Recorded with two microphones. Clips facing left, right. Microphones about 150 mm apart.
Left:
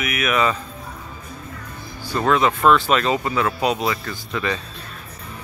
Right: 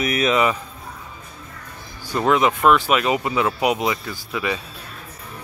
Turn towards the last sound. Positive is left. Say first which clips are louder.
# even
turn(degrees=-10)  # may be behind; listen again after turning